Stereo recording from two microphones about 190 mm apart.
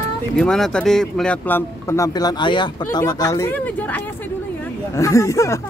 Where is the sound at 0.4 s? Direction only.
5° left (ahead or behind).